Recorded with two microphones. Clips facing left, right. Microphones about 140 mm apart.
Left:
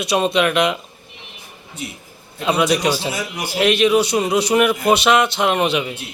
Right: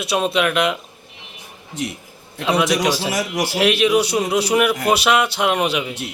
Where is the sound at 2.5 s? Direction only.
Centre (ahead or behind).